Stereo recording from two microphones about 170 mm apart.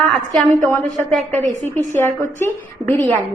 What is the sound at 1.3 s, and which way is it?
Speech, 40° right (ahead or behind).